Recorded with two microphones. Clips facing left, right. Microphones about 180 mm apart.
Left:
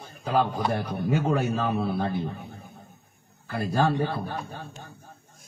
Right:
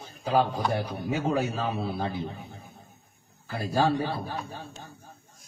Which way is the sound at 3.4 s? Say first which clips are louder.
Left 1 dB; 55° left (ahead or behind).